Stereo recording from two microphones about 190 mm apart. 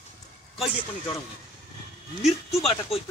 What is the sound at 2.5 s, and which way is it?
Speech, 30° left (ahead or behind).